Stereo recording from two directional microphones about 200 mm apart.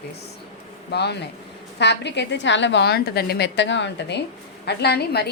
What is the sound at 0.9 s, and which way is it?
A woman's voice, 55° left (ahead or behind).